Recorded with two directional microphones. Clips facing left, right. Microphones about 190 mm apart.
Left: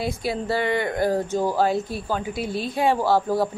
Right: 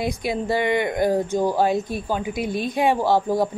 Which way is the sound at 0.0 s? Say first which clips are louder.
Right 2 dB; 20° right (ahead or behind).